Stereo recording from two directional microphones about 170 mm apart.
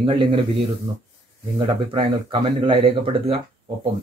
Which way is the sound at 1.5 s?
25° right (ahead or behind).